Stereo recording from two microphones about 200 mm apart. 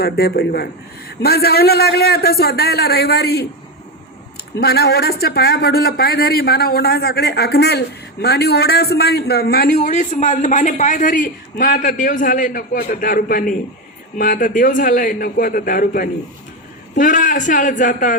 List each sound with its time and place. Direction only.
0.0 s speech: 50° left (ahead or behind)
4.6 s speech: 55° left (ahead or behind)
9.7 s a man's voice: 40° left (ahead or behind)